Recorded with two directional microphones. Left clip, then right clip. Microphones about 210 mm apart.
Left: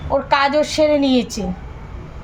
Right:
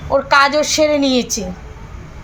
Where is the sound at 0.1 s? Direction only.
20° right (ahead or behind).